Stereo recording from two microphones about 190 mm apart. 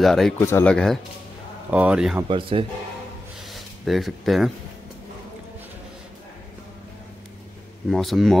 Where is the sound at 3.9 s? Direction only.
Centre (ahead or behind).